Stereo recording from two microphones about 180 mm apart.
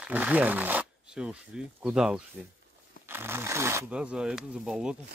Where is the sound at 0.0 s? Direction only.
10° right (ahead or behind).